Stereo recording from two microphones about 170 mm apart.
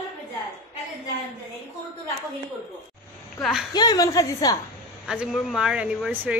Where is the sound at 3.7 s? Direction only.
25° left (ahead or behind).